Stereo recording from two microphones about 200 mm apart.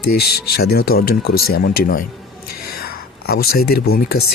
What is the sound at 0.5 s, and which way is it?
Speech, 50° left (ahead or behind).